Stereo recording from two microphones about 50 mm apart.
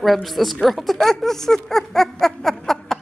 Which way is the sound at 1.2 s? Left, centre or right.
Centre.